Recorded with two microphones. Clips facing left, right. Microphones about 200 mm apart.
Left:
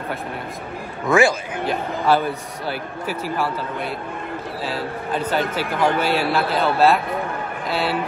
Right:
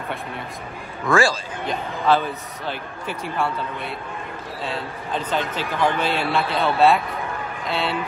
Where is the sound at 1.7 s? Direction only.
10° left (ahead or behind).